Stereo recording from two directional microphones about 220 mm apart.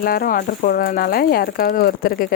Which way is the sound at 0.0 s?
40° left (ahead or behind).